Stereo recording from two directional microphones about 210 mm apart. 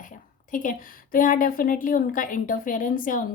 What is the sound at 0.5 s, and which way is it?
A woman's voice, 40° left (ahead or behind).